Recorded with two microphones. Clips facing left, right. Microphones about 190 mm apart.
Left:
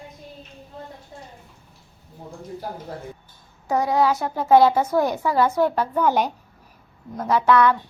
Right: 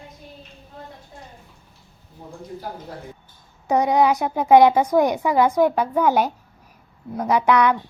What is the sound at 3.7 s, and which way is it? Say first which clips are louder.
A child's voice: right 2 dB; 20° right (ahead or behind).